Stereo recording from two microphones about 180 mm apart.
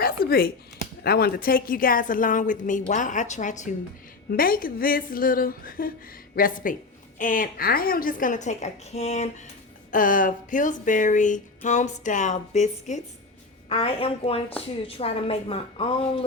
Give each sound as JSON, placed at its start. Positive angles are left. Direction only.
{"t": 0.0, "sound": "speech", "side_deg": 55}
{"t": 4.3, "sound": "speech", "side_deg": 55}
{"t": 9.9, "sound": "a woman's voice", "side_deg": 50}